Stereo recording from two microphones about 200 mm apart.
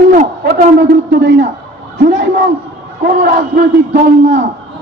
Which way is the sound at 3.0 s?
50° right (ahead or behind).